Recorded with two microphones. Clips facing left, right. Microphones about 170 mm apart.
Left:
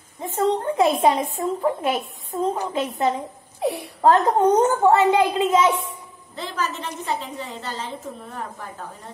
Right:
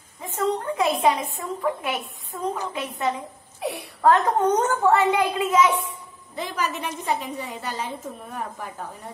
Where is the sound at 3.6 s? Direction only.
35° left (ahead or behind).